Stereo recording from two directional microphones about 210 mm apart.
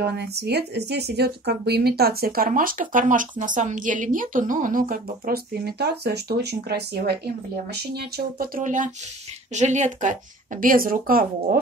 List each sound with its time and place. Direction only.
0.0 s speech: 50° right (ahead or behind)